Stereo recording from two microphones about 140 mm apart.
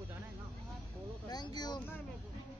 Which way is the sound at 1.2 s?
30° left (ahead or behind).